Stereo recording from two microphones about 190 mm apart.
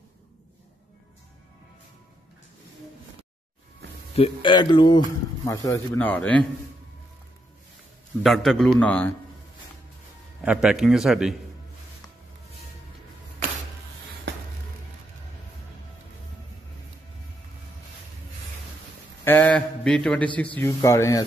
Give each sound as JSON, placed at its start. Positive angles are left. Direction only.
{"t": 4.1, "sound": "speech", "side_deg": 30}
{"t": 8.2, "sound": "a man's voice", "side_deg": 0}
{"t": 10.4, "sound": "a man's voice", "side_deg": -5}
{"t": 19.2, "sound": "mantra", "side_deg": 10}
{"t": 20.5, "sound": "speech", "side_deg": 15}